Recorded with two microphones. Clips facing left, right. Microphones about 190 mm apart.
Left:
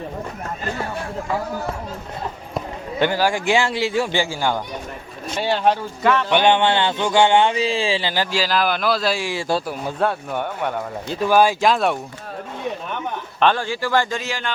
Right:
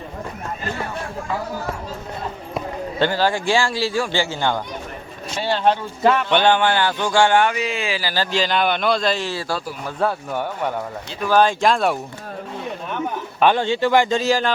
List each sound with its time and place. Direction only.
3.0 s a man's voice: 15° left (ahead or behind)
6.0 s speech: 20° right (ahead or behind)
6.3 s speech: 20° left (ahead or behind)
8.1 s a man's voice: 10° left (ahead or behind)
10.0 s speech: centre (ahead or behind)
11.3 s speech: 10° left (ahead or behind)
13.4 s speech: 20° right (ahead or behind)
14.2 s speech: 40° right (ahead or behind)